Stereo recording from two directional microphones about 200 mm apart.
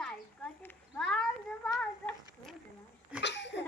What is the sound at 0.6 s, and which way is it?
Cat, 5° left (ahead or behind).